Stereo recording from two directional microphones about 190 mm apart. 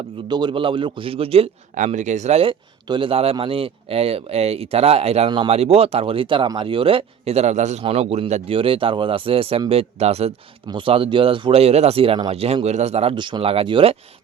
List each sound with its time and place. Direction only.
0.3 s speech: 25° right (ahead or behind)
5.3 s speech: 25° right (ahead or behind)